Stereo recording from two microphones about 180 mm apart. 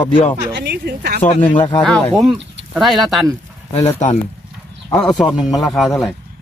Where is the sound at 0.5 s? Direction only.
65° right (ahead or behind).